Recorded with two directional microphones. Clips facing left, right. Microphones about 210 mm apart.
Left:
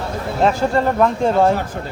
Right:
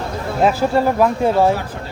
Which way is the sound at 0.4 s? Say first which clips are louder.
Right 1 dB; 5° right (ahead or behind).